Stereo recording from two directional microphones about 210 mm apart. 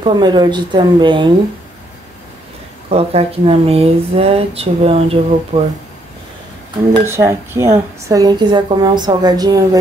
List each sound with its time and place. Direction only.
0.0 s speech: 20° right (ahead or behind)
2.9 s speech: 30° right (ahead or behind)
7.1 s a woman's voice: 10° right (ahead or behind)